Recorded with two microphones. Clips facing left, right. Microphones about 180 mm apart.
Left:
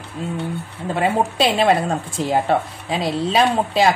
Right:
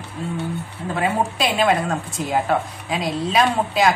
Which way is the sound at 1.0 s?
30° left (ahead or behind).